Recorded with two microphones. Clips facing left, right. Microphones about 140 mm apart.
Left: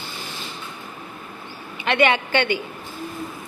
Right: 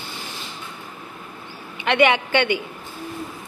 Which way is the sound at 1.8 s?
15° right (ahead or behind).